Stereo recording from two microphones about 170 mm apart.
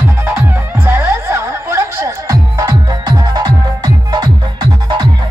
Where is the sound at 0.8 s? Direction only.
15° right (ahead or behind).